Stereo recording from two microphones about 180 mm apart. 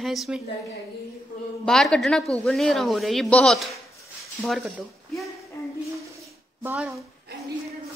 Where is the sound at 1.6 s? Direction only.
5° left (ahead or behind).